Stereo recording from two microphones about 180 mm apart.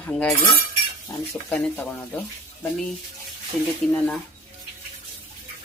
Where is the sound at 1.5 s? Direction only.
10° left (ahead or behind).